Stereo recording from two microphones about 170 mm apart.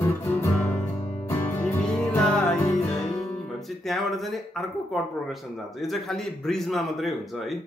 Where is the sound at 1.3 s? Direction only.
15° left (ahead or behind).